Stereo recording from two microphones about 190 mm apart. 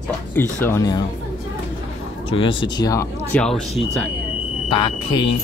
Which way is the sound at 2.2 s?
25° left (ahead or behind).